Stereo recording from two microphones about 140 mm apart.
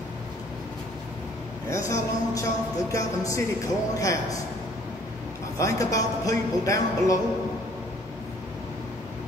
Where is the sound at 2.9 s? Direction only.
25° left (ahead or behind).